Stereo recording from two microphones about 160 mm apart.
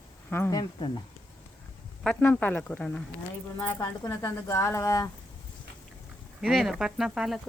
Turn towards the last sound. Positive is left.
turn(degrees=0)  # may be behind; listen again after turning